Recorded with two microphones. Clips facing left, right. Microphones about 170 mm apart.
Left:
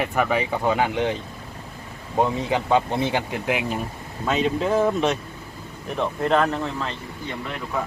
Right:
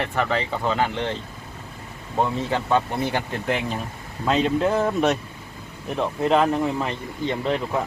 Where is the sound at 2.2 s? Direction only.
15° left (ahead or behind); by 7.3 s 15° right (ahead or behind).